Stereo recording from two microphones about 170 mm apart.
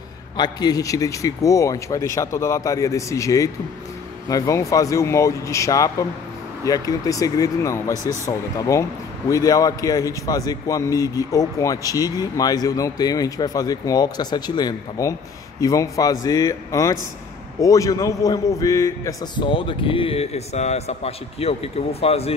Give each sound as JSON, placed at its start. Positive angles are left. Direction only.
{"t": 0.4, "sound": "a man's voice", "side_deg": 25}